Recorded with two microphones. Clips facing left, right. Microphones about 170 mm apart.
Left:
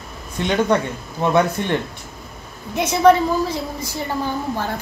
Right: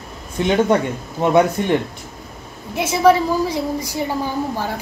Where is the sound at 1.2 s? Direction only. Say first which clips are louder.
Right 3 dB; 15° right (ahead or behind).